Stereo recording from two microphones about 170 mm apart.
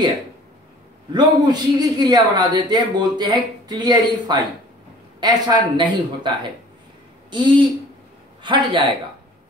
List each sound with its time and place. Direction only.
1.1 s a man's voice: 25° right (ahead or behind)